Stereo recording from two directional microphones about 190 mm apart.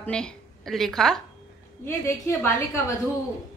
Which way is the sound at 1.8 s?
15° left (ahead or behind).